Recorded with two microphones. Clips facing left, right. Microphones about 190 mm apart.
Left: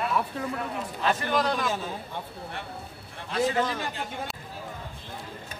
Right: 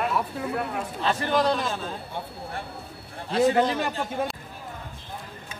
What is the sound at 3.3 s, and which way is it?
Speech, 35° right (ahead or behind).